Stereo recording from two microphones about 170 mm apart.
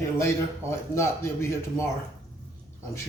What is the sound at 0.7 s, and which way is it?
Speech, 15° left (ahead or behind).